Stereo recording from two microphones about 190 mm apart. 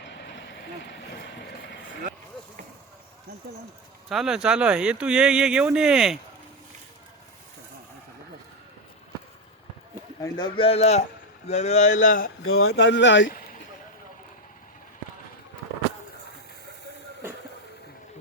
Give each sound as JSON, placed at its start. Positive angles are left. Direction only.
{"t": 4.1, "sound": "speech", "side_deg": 0}
{"t": 10.2, "sound": "a man's voice", "side_deg": 20}
{"t": 12.4, "sound": "speech", "side_deg": 90}